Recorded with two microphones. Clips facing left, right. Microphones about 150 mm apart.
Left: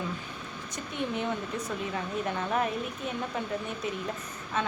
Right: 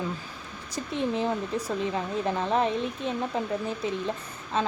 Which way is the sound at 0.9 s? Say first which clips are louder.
Right 4 dB; 30° right (ahead or behind).